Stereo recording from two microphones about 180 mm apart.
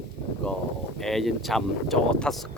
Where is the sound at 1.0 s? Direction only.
Centre (ahead or behind).